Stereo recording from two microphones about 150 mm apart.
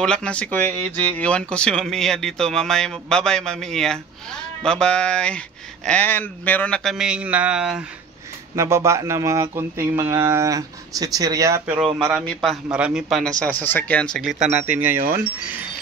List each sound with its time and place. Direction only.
0.0 s speech: 5° left (ahead or behind)
8.5 s speech: 20° right (ahead or behind)
12.0 s speech: centre (ahead or behind)
13.4 s speech: 10° left (ahead or behind)
14.7 s wind chime: 10° right (ahead or behind)